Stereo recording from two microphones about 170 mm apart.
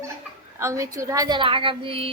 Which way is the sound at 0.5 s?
15° right (ahead or behind).